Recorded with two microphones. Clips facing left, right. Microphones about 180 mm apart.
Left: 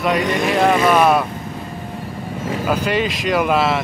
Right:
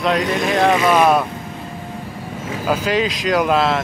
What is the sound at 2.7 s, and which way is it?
Speech, centre (ahead or behind).